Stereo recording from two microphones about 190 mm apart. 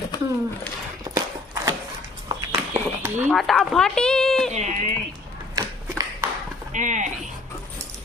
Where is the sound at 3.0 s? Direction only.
10° right (ahead or behind).